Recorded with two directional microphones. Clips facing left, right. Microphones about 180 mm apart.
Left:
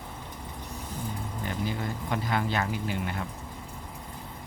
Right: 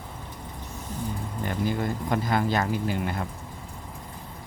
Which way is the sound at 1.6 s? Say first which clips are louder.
Right 7 dB; 45° right (ahead or behind).